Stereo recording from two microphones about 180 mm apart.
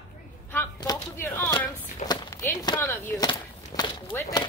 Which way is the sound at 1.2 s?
15° left (ahead or behind).